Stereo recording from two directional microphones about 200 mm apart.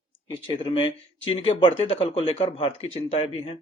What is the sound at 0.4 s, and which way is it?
Speech, 25° left (ahead or behind).